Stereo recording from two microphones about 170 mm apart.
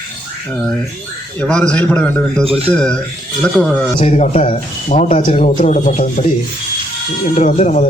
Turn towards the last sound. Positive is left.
turn(degrees=45)  # may be behind; listen again after turning